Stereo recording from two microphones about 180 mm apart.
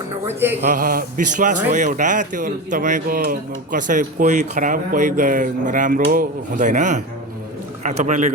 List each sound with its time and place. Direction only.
0.3 s speech: 15° right (ahead or behind)
0.7 s a man's voice: 50° right (ahead or behind)